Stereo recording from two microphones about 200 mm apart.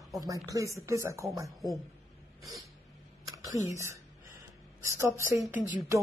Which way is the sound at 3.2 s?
15° right (ahead or behind).